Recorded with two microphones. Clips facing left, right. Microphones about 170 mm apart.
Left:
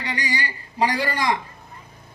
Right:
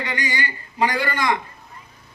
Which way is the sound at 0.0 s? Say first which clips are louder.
Right 1 dB; 35° left (ahead or behind).